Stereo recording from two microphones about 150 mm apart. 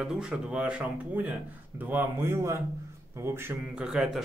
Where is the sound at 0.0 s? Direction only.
5° right (ahead or behind).